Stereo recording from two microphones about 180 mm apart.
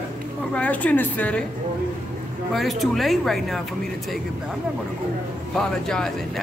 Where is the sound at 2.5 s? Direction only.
Centre (ahead or behind).